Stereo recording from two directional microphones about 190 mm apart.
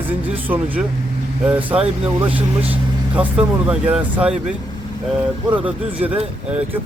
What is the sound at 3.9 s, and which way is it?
Speech, 5° right (ahead or behind).